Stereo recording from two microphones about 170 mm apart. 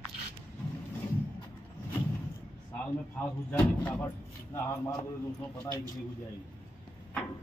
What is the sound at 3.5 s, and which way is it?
A man's voice, 10° left (ahead or behind).